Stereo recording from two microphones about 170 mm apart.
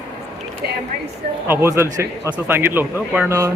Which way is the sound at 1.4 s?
15° right (ahead or behind).